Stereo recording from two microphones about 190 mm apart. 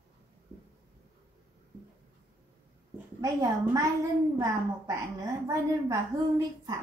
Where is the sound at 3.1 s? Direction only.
15° right (ahead or behind).